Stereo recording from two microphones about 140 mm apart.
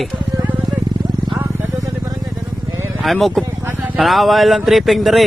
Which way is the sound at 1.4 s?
25° right (ahead or behind).